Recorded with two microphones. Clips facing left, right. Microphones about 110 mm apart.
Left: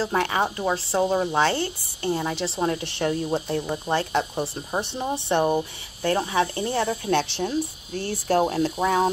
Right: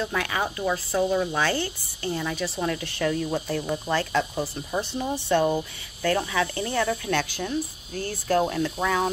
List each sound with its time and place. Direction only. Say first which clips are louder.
0.0 s a woman's voice: left 4 dB; 30° left (ahead or behind)